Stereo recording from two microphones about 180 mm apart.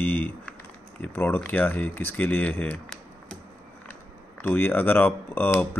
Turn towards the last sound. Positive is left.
turn(degrees=10)  # may be behind; listen again after turning